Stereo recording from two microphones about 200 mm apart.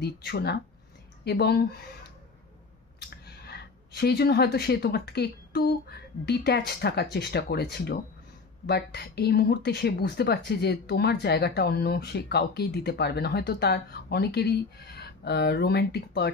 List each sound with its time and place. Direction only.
0.0 s speech: 55° left (ahead or behind)
3.0 s speech: 55° left (ahead or behind)